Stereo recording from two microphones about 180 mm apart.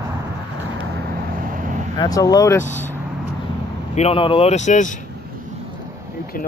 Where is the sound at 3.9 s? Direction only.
35° left (ahead or behind).